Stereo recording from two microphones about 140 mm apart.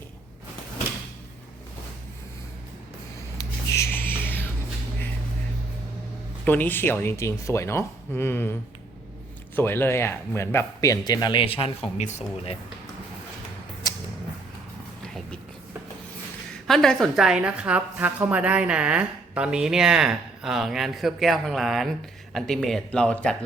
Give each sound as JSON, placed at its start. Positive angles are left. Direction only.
{"t": 3.3, "sound": "a sound", "side_deg": 20}
{"t": 6.4, "sound": "speech", "side_deg": 15}
{"t": 9.6, "sound": "speech", "side_deg": 15}
{"t": 16.6, "sound": "a woman's voice", "side_deg": 5}